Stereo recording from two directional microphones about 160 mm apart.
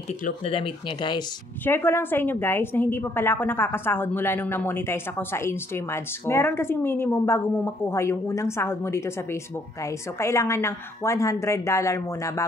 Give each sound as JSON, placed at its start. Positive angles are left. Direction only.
{"t": 0.5, "sound": "speech", "side_deg": 30}
{"t": 1.6, "sound": "a woman's voice", "side_deg": 15}